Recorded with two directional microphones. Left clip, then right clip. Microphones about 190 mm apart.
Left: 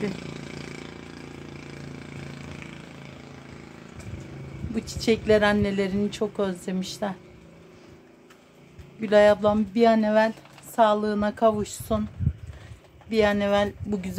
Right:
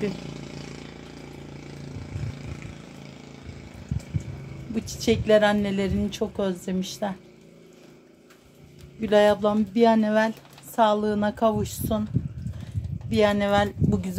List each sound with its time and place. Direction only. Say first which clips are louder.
4.7 s a woman's voice: even; centre (ahead or behind)
9.0 s a woman's voice: left 1 dB; centre (ahead or behind)
13.1 s a woman's voice: right 1 dB; centre (ahead or behind)